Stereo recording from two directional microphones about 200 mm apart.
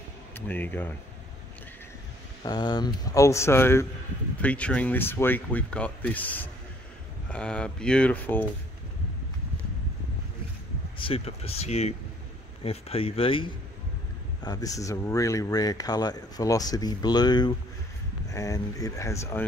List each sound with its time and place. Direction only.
0.3 s speech: 10° left (ahead or behind)
2.4 s speech: 20° left (ahead or behind)
11.0 s speech: 30° left (ahead or behind)